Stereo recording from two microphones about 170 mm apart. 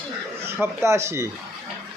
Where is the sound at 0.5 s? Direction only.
15° right (ahead or behind).